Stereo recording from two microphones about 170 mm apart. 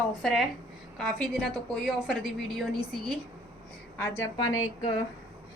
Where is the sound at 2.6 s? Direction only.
Centre (ahead or behind).